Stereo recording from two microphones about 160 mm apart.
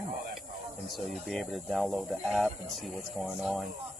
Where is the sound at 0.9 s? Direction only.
Centre (ahead or behind).